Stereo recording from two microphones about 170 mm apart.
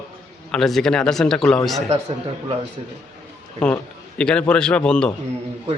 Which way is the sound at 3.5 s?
5° left (ahead or behind).